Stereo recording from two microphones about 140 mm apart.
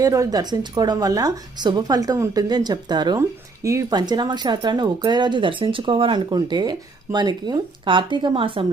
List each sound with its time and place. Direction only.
0.0 s speech: 25° right (ahead or behind)